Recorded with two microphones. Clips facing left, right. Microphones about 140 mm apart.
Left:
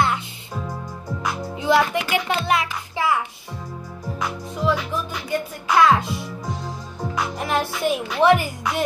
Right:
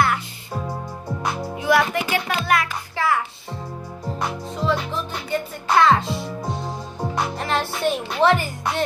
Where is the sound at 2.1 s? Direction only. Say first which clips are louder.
Even; 20° left (ahead or behind).